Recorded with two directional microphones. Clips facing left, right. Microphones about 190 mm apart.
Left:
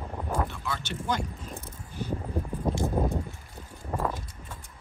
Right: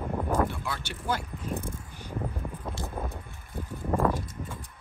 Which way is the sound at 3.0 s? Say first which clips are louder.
Left 7 dB; 30° left (ahead or behind).